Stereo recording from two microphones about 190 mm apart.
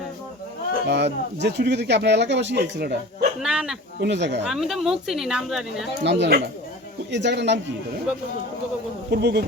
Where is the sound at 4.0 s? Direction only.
65° right (ahead or behind).